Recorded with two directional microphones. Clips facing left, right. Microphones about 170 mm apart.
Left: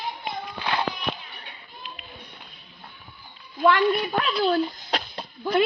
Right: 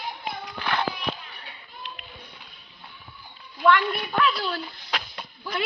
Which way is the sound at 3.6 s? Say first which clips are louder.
Left 2 dB; 35° left (ahead or behind).